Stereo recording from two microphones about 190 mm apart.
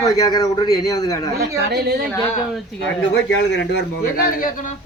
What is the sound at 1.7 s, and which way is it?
Speech, 55° right (ahead or behind).